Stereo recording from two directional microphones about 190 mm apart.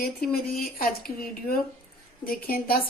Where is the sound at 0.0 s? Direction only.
55° left (ahead or behind).